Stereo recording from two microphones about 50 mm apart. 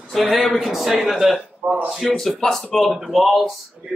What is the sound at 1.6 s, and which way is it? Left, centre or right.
Speech, right.